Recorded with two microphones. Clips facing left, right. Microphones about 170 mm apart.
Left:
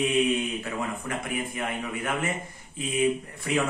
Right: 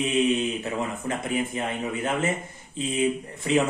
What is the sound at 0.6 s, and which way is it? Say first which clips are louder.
Speech: right 3 dB; 25° right (ahead or behind).